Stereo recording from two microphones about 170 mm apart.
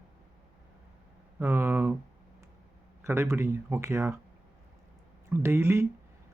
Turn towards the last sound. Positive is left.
turn(degrees=-15)  # may be behind; listen again after turning